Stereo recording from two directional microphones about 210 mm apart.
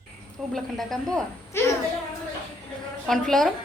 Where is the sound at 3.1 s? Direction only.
Centre (ahead or behind).